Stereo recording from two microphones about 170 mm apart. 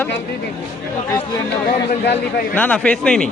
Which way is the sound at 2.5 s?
10° left (ahead or behind).